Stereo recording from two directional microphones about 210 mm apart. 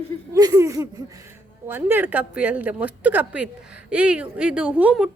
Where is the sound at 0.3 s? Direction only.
15° right (ahead or behind).